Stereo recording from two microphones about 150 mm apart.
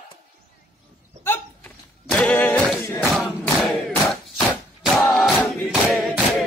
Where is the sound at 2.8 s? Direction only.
15° left (ahead or behind).